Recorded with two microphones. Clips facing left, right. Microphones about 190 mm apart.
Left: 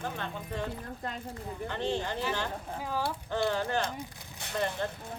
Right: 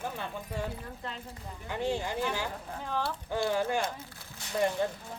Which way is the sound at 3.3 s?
10° right (ahead or behind).